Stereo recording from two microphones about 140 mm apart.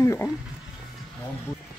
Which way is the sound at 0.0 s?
20° left (ahead or behind).